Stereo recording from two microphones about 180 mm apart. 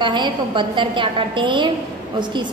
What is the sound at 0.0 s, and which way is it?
A woman's voice, 25° right (ahead or behind).